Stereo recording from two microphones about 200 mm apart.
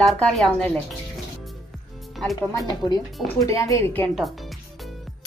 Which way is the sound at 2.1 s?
Centre (ahead or behind).